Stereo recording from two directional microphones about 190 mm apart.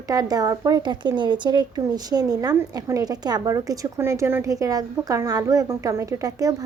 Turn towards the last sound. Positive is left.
turn(degrees=-20)  # may be behind; listen again after turning